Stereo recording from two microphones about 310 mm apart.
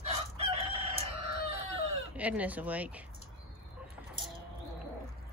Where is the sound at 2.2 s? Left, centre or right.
Centre.